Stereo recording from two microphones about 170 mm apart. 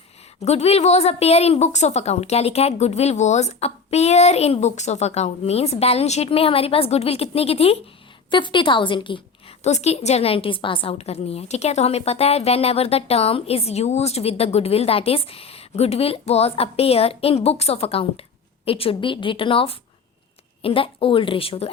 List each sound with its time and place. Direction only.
0.4 s a woman's voice: 40° left (ahead or behind)
9.6 s a woman's voice: 40° left (ahead or behind)